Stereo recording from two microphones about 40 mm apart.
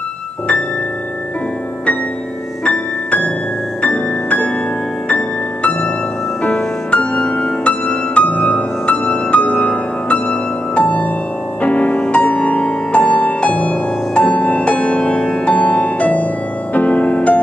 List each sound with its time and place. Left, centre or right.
3.8 s music: left
7.8 s music: left